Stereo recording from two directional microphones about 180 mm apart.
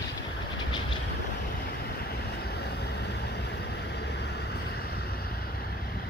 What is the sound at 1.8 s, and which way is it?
Vehicle, 60° left (ahead or behind).